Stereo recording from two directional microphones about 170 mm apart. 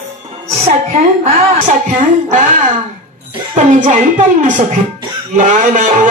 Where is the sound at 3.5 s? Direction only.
45° right (ahead or behind).